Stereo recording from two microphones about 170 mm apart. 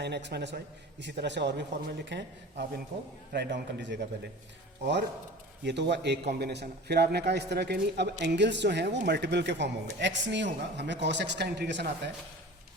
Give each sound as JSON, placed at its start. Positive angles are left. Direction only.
{"t": 0.0, "sound": "a man's voice", "side_deg": -85}
{"t": 5.6, "sound": "a man's voice", "side_deg": -90}
{"t": 8.2, "sound": "a man's voice", "side_deg": -90}